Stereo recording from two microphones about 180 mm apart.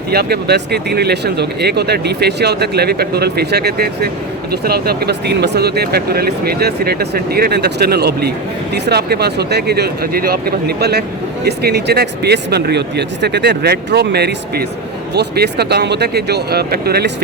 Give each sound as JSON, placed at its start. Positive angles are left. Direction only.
{"t": 0.1, "sound": "speech", "side_deg": -60}